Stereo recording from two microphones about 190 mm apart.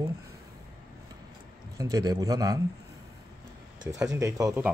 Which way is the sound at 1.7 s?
20° right (ahead or behind).